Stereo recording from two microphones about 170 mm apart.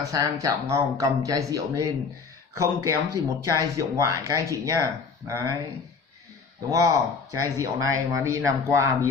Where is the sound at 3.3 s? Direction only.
20° right (ahead or behind).